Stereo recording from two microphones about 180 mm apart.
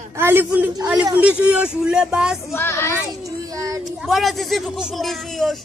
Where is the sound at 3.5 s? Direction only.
20° right (ahead or behind).